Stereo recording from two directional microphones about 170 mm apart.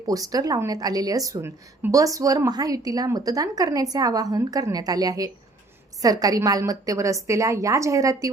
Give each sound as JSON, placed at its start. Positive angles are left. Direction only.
{"t": 0.0, "sound": "a woman's voice", "side_deg": -20}